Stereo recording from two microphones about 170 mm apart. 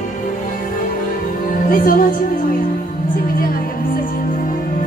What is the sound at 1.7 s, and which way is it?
Speech, 55° left (ahead or behind).